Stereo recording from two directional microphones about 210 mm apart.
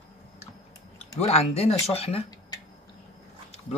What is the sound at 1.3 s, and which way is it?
Speech, 30° left (ahead or behind).